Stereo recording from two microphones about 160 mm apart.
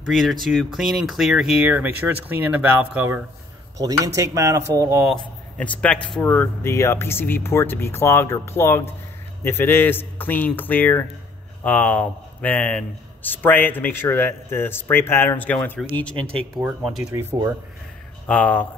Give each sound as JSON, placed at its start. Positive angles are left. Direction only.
{"t": 0.1, "sound": "speech", "side_deg": 0}
{"t": 3.7, "sound": "speech", "side_deg": -20}
{"t": 5.6, "sound": "a man's voice", "side_deg": 5}
{"t": 16.5, "sound": "speech", "side_deg": 0}
{"t": 18.2, "sound": "a man's voice", "side_deg": 10}